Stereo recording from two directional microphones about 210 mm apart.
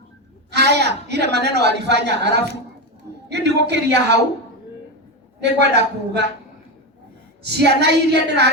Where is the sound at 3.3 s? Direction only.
55° right (ahead or behind).